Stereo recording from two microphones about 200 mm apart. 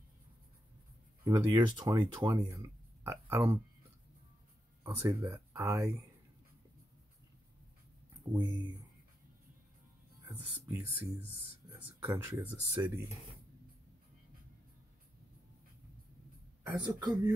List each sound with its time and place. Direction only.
1.2 s speech: 15° right (ahead or behind)
4.8 s speech: 15° right (ahead or behind)
8.5 s speech: 25° left (ahead or behind)
10.6 s speech: 10° right (ahead or behind)
16.7 s speech: 20° right (ahead or behind)